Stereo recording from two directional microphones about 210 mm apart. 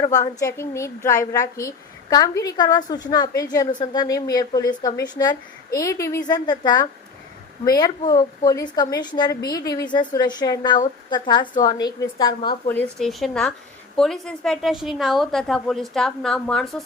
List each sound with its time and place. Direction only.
0.0 s a woman's voice: 15° left (ahead or behind)
12.6 s a woman's voice: 5° left (ahead or behind)